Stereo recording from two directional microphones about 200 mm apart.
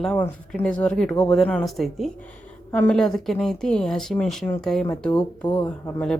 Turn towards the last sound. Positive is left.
turn(degrees=25)  # may be behind; listen again after turning